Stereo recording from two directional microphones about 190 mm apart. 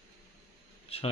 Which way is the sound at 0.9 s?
30° left (ahead or behind).